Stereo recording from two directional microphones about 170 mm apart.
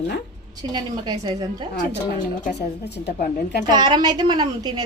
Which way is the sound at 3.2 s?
55° left (ahead or behind).